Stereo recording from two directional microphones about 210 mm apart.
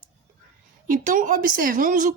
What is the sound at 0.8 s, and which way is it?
Speech, 40° right (ahead or behind).